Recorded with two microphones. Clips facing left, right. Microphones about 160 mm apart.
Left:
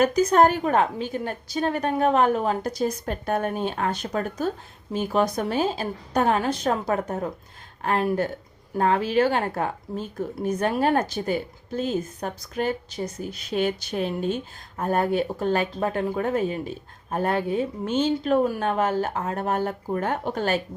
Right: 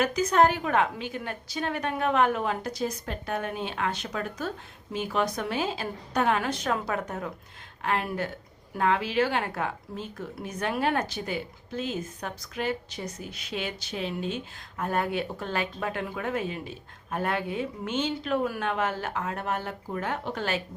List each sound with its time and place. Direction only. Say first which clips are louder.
0.0 s a woman's voice: left 4 dB; 50° left (ahead or behind)